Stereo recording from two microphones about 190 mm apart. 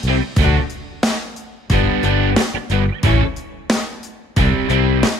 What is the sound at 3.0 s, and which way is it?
Music, centre (ahead or behind).